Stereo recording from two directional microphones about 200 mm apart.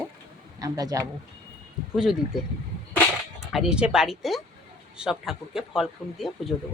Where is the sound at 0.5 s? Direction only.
20° right (ahead or behind).